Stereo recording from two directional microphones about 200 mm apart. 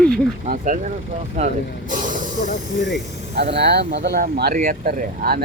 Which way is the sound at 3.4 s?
60° right (ahead or behind).